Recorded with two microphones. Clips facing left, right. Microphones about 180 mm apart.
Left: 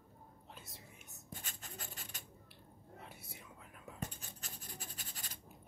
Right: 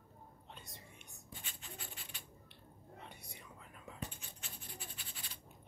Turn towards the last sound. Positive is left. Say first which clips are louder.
# left 1 dB
turn(degrees=45)  # may be behind; listen again after turning